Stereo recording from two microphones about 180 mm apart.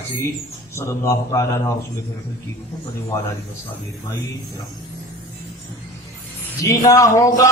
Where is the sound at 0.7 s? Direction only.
15° left (ahead or behind).